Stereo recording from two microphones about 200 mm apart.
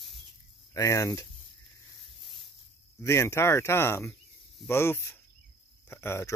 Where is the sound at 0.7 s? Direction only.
15° left (ahead or behind).